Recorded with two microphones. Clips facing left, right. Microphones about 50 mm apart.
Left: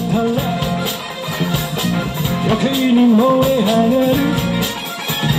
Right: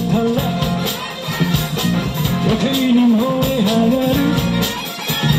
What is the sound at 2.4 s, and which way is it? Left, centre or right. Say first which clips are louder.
Music: left 1 dB; centre.